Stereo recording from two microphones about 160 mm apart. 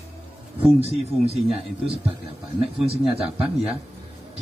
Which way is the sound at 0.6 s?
35° right (ahead or behind).